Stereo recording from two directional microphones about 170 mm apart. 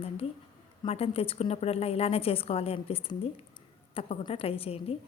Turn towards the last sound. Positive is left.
turn(degrees=35)  # may be behind; listen again after turning